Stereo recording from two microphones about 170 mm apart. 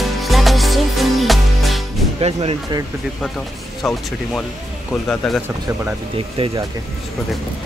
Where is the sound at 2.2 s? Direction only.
40° right (ahead or behind).